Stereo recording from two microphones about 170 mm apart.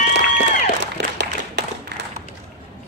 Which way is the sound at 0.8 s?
90° right.